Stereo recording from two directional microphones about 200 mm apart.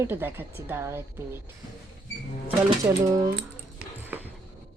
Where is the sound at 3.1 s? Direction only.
15° right (ahead or behind).